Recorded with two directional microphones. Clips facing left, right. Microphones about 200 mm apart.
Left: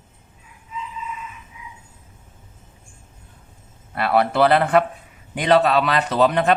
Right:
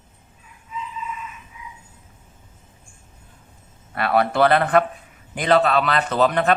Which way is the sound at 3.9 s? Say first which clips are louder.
Left 1 dB; 5° left (ahead or behind).